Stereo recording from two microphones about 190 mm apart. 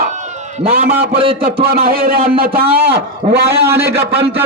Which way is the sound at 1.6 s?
50° right (ahead or behind).